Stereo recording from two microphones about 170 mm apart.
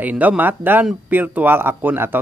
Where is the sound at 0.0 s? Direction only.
10° right (ahead or behind).